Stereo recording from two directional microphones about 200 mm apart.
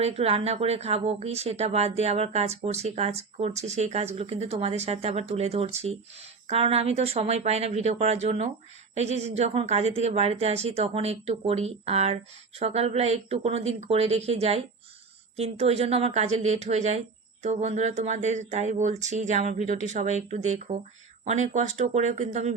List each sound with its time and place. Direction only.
0.0 s speech: 30° right (ahead or behind)